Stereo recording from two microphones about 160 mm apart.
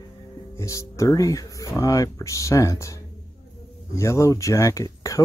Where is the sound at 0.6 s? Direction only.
20° left (ahead or behind).